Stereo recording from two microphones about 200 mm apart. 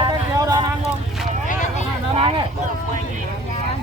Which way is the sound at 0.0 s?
20° right (ahead or behind).